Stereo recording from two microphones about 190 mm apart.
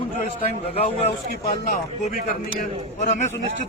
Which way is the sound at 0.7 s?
30° left (ahead or behind).